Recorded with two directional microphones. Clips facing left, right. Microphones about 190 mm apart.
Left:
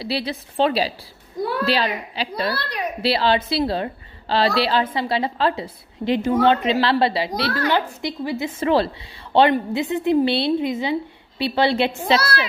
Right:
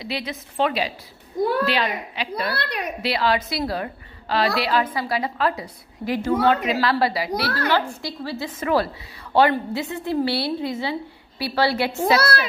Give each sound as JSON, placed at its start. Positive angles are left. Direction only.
{"t": 0.0, "sound": "a child's voice", "side_deg": 35}